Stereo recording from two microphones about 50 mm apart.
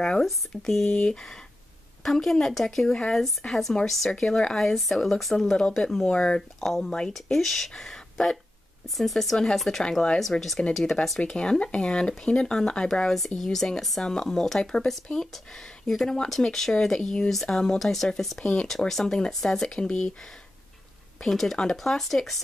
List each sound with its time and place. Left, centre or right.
0.2 s speech: centre
0.8 s speech: left
6.6 s speech: centre
6.9 s speech: centre
7.2 s speech: centre
10.7 s speech: centre
11.1 s speech: centre
13.4 s speech: centre
18.4 s speech: left
18.7 s speech: centre
21.2 s speech: centre